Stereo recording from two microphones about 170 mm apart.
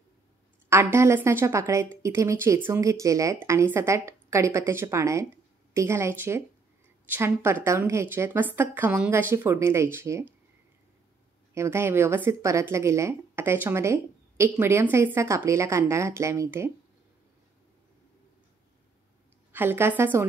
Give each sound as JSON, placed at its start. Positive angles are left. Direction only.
{"t": 0.7, "sound": "speech", "side_deg": -15}
{"t": 11.5, "sound": "speech", "side_deg": -15}
{"t": 19.5, "sound": "speech", "side_deg": -15}